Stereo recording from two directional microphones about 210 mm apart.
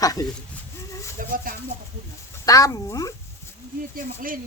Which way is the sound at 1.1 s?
40° right (ahead or behind).